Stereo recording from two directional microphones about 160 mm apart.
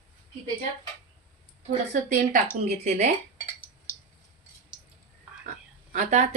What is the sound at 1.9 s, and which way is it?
Speech, 60° right (ahead or behind).